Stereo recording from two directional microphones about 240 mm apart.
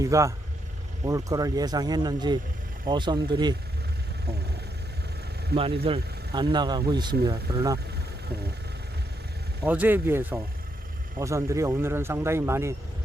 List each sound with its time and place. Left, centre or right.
0.0 s speech: centre
5.8 s speech: right
9.6 s speech: centre